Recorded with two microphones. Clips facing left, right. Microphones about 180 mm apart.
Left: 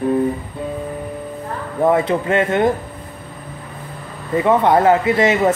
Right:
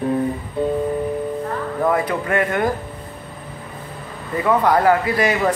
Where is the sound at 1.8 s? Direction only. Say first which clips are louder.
Left 5 dB; 25° left (ahead or behind).